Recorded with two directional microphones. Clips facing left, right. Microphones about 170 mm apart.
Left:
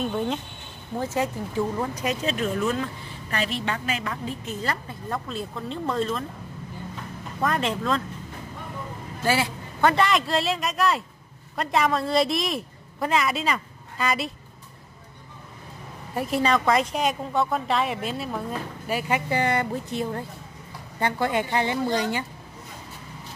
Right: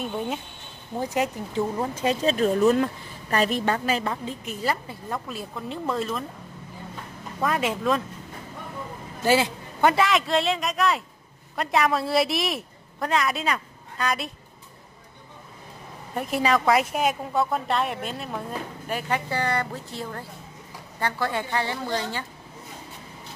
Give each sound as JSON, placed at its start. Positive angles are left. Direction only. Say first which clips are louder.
{"t": 0.0, "sound": "speech", "louder": "left 3 dB", "side_deg": -5}
{"t": 0.9, "sound": "speech", "louder": "even", "side_deg": -15}
{"t": 4.5, "sound": "speech", "louder": "right 4 dB", "side_deg": -10}
{"t": 7.3, "sound": "a woman's voice", "louder": "even", "side_deg": -5}
{"t": 9.2, "sound": "a sound", "louder": "right 3 dB", "side_deg": -20}
{"t": 9.9, "sound": "a woman's voice", "louder": "even", "side_deg": 0}
{"t": 16.2, "sound": "a woman's voice", "louder": "even", "side_deg": 0}